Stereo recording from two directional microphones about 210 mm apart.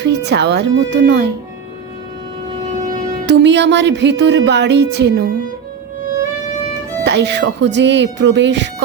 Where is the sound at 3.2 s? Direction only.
55° right (ahead or behind).